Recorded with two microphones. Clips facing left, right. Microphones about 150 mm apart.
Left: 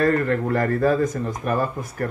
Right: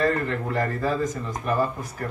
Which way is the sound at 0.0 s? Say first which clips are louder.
Left 4 dB; 50° left (ahead or behind).